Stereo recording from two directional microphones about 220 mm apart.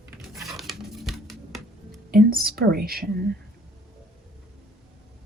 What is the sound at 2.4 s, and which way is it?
Speech, 45° right (ahead or behind).